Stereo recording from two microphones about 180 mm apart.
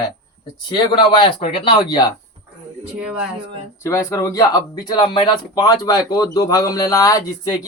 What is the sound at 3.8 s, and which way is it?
Speech, 15° left (ahead or behind).